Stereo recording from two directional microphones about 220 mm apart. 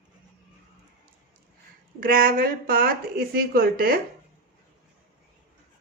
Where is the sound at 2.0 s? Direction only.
40° right (ahead or behind).